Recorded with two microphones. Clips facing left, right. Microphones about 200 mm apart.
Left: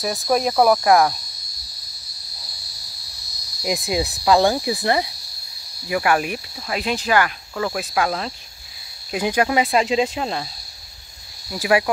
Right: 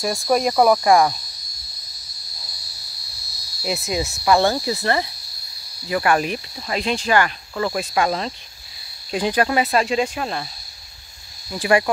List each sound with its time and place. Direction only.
0.0 s cricket: centre (ahead or behind)
3.6 s cricket: 15° left (ahead or behind)
11.5 s cricket: 5° left (ahead or behind)